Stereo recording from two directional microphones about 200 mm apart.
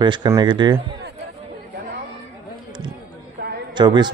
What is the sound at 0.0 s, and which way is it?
Speech, 20° right (ahead or behind).